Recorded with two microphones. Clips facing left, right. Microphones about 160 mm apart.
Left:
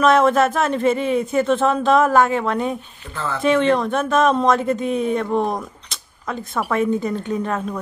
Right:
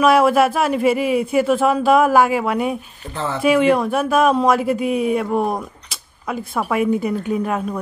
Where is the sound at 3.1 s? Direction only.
25° right (ahead or behind).